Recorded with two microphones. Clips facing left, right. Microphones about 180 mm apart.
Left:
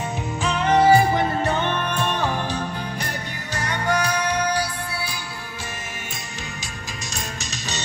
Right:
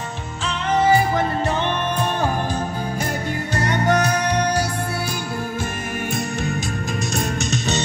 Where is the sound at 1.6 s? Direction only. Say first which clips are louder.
Right 2 dB; 35° right (ahead or behind).